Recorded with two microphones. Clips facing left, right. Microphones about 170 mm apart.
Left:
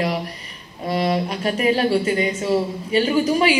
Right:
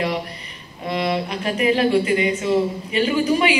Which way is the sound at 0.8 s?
35° left (ahead or behind).